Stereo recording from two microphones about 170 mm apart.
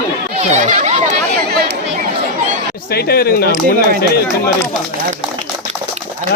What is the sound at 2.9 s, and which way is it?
Speech, 65° left (ahead or behind).